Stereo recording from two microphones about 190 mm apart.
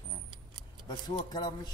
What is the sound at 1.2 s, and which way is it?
Speech, 20° left (ahead or behind).